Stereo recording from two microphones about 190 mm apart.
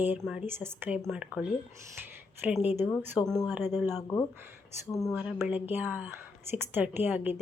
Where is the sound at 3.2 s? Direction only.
20° left (ahead or behind).